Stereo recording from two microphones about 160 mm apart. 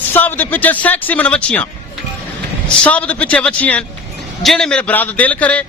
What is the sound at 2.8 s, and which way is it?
A man's voice, 10° left (ahead or behind).